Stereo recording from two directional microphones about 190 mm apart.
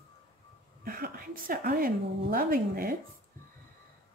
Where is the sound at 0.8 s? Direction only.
50° right (ahead or behind).